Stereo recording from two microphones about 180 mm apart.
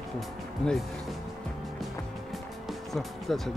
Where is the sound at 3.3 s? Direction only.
Centre (ahead or behind).